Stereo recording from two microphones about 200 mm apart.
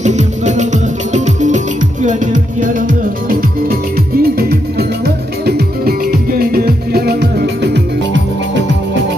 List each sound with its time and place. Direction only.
0.0 s music: 35° right (ahead or behind); by 8.2 s 60° right (ahead or behind)